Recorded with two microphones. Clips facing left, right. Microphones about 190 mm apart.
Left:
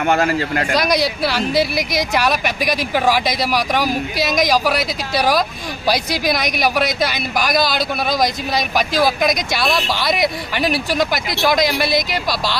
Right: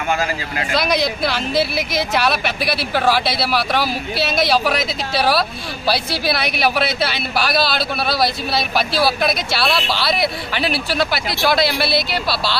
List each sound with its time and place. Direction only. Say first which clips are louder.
0.0 s speech: left 5 dB; 60° left (ahead or behind)
0.7 s a man's voice: even; 10° left (ahead or behind)